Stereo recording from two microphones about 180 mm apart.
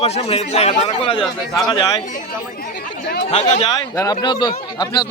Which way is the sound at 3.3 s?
35° left (ahead or behind).